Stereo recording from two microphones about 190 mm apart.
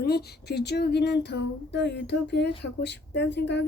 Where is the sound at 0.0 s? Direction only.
55° left (ahead or behind).